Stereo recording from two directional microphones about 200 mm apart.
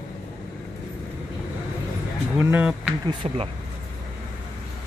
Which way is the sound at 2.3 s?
5° right (ahead or behind).